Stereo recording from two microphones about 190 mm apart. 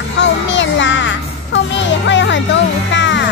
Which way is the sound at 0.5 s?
75° left (ahead or behind).